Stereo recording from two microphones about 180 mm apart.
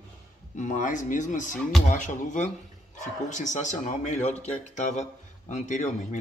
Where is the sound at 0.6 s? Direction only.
45° left (ahead or behind).